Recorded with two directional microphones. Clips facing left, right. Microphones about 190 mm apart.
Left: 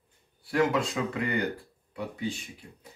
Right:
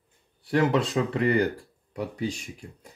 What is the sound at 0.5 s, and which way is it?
Speech, 35° right (ahead or behind).